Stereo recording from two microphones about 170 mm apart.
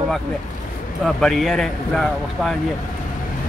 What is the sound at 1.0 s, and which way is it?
Speech, centre (ahead or behind).